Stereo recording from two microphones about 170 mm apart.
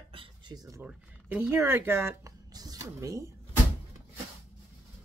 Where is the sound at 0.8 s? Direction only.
10° right (ahead or behind).